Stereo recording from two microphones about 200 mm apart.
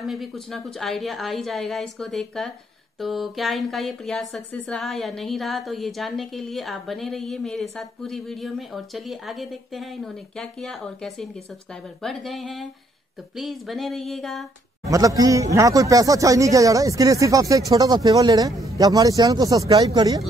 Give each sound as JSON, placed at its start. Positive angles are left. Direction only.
{"t": 0.0, "sound": "speech", "side_deg": 0}
{"t": 14.9, "sound": "speech", "side_deg": -15}